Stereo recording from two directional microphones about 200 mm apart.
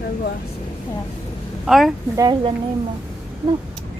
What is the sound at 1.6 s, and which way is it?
Speech, centre (ahead or behind).